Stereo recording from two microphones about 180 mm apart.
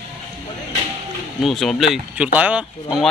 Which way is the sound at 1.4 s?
Centre (ahead or behind).